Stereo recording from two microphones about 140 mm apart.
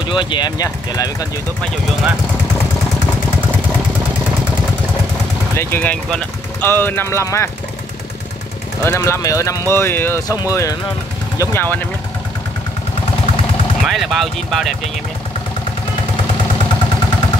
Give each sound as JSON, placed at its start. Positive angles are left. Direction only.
{"t": 0.0, "sound": "speech", "side_deg": 35}
{"t": 5.6, "sound": "speech", "side_deg": 15}
{"t": 8.8, "sound": "speech", "side_deg": 20}
{"t": 13.8, "sound": "speech", "side_deg": 0}